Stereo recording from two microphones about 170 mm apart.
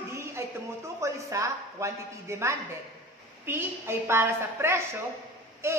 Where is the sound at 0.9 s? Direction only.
15° right (ahead or behind).